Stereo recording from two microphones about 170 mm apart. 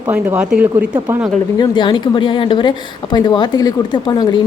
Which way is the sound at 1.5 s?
25° left (ahead or behind).